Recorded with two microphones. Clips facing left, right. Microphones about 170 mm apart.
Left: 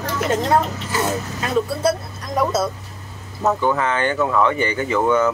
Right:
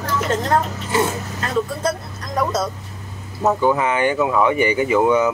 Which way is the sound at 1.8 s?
10° left (ahead or behind).